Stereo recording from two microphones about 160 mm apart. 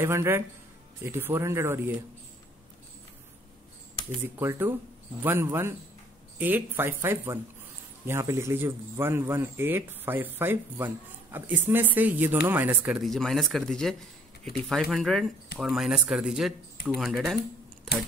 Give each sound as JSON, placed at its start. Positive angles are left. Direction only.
{"t": 0.0, "sound": "speech", "side_deg": -15}
{"t": 4.2, "sound": "speech", "side_deg": -15}